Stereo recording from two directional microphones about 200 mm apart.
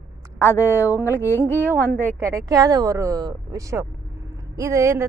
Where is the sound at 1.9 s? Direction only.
40° right (ahead or behind).